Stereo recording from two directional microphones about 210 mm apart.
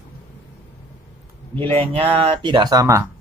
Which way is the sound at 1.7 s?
25° right (ahead or behind).